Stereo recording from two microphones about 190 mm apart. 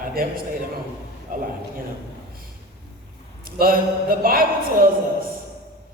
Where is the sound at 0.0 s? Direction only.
50° right (ahead or behind).